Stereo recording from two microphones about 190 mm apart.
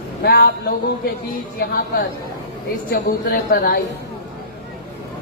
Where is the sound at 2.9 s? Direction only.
55° left (ahead or behind).